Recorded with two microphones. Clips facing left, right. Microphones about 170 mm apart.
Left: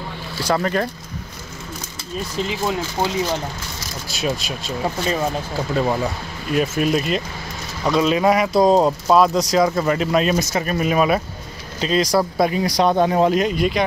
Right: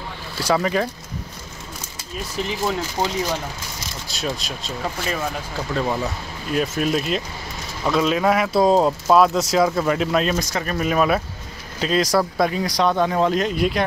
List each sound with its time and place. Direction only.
0.4 s speech: 5° right (ahead or behind)
2.6 s speech: 15° left (ahead or behind)
4.1 s speech: centre (ahead or behind)
4.8 s speech: 25° left (ahead or behind)
5.7 s speech: 10° left (ahead or behind)
12.4 s speech: 10° left (ahead or behind)
13.4 s speech: centre (ahead or behind)